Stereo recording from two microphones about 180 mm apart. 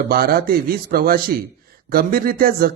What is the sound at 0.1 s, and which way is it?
A man's voice, 55° right (ahead or behind).